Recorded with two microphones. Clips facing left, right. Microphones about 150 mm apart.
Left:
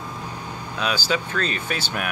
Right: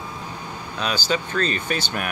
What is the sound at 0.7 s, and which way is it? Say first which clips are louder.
Speech: even; 5° left (ahead or behind).